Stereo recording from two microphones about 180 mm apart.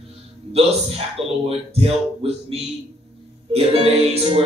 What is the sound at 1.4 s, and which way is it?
Music, 35° right (ahead or behind).